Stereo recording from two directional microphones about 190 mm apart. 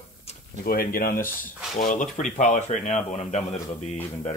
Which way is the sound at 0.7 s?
50° left (ahead or behind).